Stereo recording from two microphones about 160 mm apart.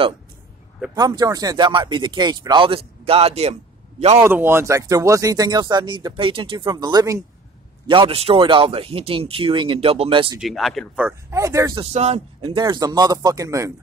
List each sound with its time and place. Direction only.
0.9 s speech: 25° right (ahead or behind); by 3.5 s 40° right (ahead or behind)
4.2 s speech: 15° right (ahead or behind)
7.8 s speech: 35° right (ahead or behind)
10.4 s speech: centre (ahead or behind)
11.1 s speech: 15° right (ahead or behind)
11.8 s speech: 40° right (ahead or behind); by 13.7 s 20° right (ahead or behind)